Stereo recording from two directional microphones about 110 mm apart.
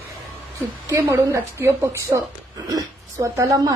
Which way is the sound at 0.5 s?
30° right (ahead or behind).